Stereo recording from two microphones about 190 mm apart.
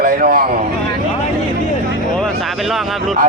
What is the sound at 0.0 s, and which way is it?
Speech, 45° right (ahead or behind).